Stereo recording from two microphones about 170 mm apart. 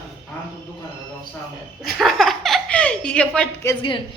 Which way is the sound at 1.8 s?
Centre (ahead or behind).